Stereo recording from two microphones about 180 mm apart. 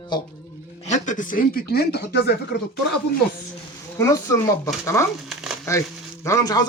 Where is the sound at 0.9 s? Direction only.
40° left (ahead or behind); by 2.3 s 60° left (ahead or behind).